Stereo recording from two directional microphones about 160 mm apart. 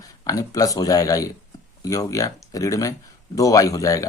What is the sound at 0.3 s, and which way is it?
Speech, 20° left (ahead or behind).